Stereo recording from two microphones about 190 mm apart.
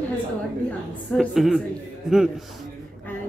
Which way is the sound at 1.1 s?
Centre (ahead or behind).